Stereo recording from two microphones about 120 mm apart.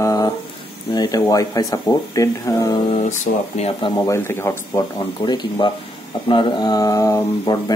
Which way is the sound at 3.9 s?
20° left (ahead or behind).